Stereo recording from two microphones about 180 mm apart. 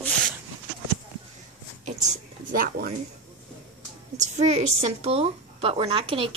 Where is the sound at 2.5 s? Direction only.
55° right (ahead or behind).